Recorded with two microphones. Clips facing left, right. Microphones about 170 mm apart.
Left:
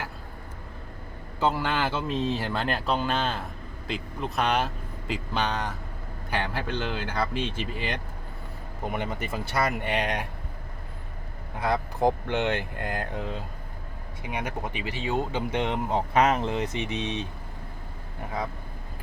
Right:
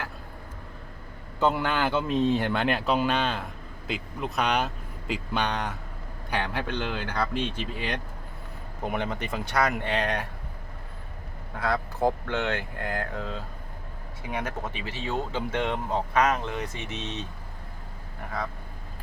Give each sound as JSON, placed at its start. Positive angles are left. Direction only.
{"t": 1.4, "sound": "speech", "side_deg": 5}
{"t": 11.6, "sound": "speech", "side_deg": 15}